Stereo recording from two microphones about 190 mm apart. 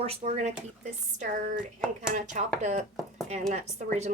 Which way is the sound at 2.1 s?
40° right (ahead or behind).